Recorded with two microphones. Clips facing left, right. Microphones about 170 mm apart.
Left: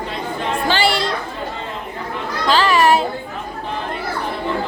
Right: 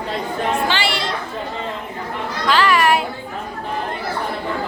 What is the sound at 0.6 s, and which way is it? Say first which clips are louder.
Chatter: left 3 dB; 40° left (ahead or behind).